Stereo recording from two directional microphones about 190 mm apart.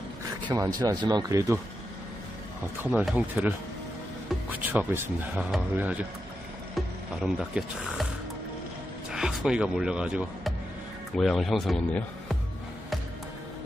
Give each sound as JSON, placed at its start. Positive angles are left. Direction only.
{"t": 0.5, "sound": "speech", "side_deg": -20}
{"t": 2.8, "sound": "speech", "side_deg": -5}
{"t": 7.2, "sound": "speech", "side_deg": -5}
{"t": 9.1, "sound": "speech", "side_deg": -5}